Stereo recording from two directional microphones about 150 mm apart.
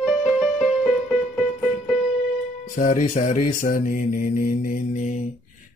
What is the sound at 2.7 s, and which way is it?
Mantra, 65° left (ahead or behind).